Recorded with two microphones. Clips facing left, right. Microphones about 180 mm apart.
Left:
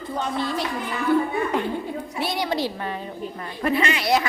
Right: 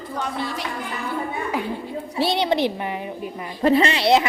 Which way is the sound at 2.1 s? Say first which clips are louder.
Right 6 dB; 30° right (ahead or behind).